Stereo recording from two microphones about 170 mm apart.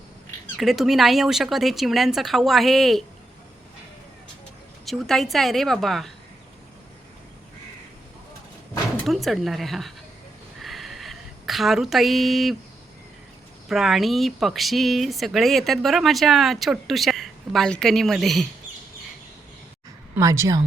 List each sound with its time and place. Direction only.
0.5 s speech: centre (ahead or behind)
4.9 s speech: centre (ahead or behind)
9.0 s speech: centre (ahead or behind)
10.6 s a sound: centre (ahead or behind)
13.7 s speech: centre (ahead or behind)
20.1 s a woman's voice: 20° right (ahead or behind)